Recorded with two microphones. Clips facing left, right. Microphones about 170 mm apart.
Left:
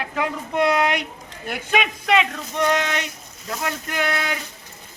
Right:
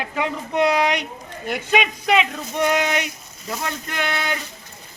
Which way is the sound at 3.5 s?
5° left (ahead or behind).